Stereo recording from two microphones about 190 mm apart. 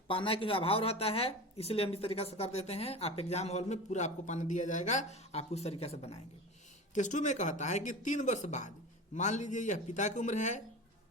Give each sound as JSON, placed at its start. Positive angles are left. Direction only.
{"t": 0.1, "sound": "a woman's voice", "side_deg": 25}